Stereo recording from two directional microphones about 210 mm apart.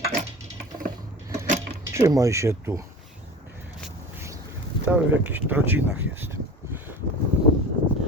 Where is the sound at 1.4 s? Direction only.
35° right (ahead or behind).